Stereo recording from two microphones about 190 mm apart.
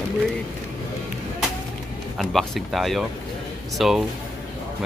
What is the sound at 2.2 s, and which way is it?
Speech, centre (ahead or behind).